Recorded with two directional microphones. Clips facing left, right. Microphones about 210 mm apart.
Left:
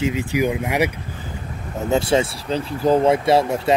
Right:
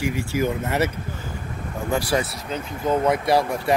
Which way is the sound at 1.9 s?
25° left (ahead or behind).